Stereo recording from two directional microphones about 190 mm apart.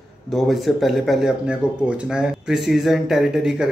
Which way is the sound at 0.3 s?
Centre (ahead or behind).